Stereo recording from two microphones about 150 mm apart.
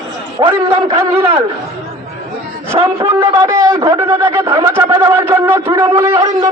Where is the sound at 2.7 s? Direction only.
35° right (ahead or behind).